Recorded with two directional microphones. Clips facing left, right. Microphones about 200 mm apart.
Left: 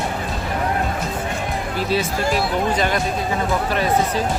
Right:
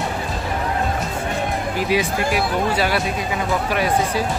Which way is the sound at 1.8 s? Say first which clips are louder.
Right 1 dB; 15° right (ahead or behind).